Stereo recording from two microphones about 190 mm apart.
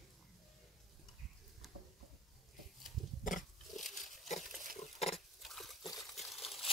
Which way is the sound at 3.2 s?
45° left (ahead or behind).